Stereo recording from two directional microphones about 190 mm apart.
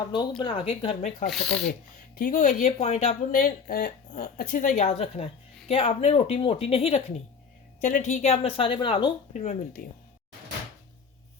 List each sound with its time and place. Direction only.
0.1 s speech: 25° left (ahead or behind)
1.3 s speech: centre (ahead or behind)
2.1 s a woman's voice: 45° left (ahead or behind)
7.8 s speech: 40° left (ahead or behind); by 9.1 s 25° left (ahead or behind)
9.3 s speech: 40° left (ahead or behind)